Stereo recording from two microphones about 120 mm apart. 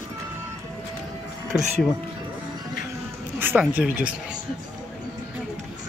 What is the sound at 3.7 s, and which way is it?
Speech, 10° right (ahead or behind).